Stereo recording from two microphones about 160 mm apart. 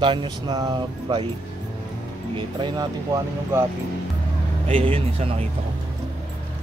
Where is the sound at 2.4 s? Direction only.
30° right (ahead or behind).